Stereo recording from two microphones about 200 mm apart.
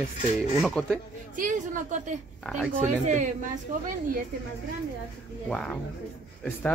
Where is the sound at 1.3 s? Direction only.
40° right (ahead or behind).